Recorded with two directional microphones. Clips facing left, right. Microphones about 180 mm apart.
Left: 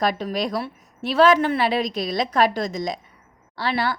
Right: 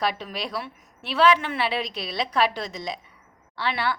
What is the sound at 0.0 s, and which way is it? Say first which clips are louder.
A woman's voice: left 5 dB; 45° left (ahead or behind).